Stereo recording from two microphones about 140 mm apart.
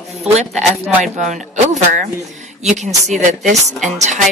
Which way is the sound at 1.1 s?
60° right (ahead or behind).